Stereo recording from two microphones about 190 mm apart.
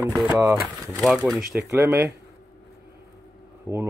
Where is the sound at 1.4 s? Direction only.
15° right (ahead or behind).